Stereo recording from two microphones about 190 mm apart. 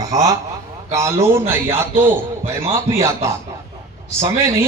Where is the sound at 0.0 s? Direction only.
15° right (ahead or behind).